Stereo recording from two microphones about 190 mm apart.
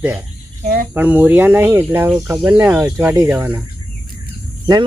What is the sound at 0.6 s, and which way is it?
Cricket, 50° right (ahead or behind).